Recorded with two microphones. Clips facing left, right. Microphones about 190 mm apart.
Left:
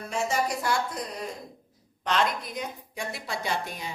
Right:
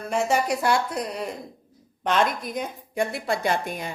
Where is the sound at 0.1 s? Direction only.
65° right (ahead or behind).